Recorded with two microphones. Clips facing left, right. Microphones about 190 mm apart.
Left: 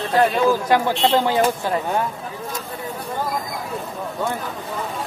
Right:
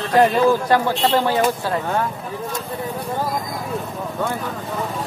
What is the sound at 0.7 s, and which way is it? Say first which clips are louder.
Speech: even; 15° left (ahead or behind).